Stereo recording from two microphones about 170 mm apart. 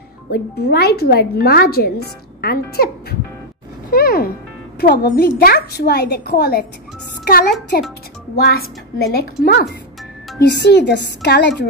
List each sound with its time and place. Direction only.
0.3 s a woman's voice: 65° left (ahead or behind)
3.9 s music: 60° left (ahead or behind)
4.7 s a woman's voice: 70° left (ahead or behind)
10.6 s a woman's voice: 85° left